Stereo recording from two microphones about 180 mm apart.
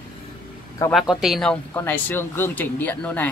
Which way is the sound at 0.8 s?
15° left (ahead or behind).